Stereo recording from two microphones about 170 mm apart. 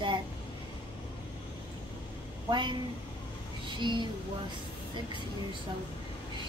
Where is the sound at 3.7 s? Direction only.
25° right (ahead or behind).